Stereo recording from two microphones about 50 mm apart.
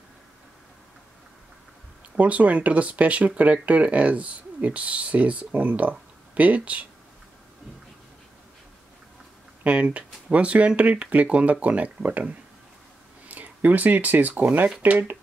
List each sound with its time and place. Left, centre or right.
2.1 s speech: right
9.6 s speech: right